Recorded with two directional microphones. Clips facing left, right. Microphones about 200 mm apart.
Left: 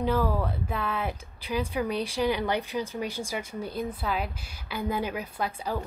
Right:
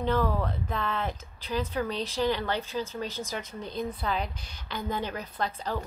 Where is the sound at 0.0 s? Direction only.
10° left (ahead or behind).